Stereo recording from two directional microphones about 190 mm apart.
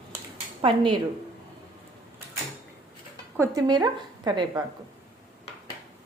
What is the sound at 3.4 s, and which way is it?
A woman's voice, 20° right (ahead or behind).